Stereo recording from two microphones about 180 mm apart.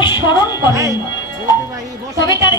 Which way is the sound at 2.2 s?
20° left (ahead or behind).